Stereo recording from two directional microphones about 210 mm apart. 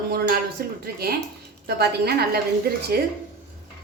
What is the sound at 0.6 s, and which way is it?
A woman's voice, 45° right (ahead or behind).